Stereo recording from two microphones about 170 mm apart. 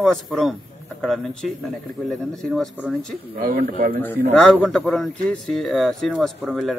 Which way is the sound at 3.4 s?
55° right (ahead or behind).